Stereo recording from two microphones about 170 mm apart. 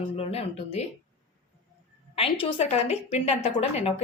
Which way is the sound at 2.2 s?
35° left (ahead or behind).